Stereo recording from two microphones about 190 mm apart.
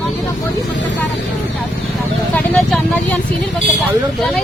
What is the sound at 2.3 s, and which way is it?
Speech, 5° left (ahead or behind).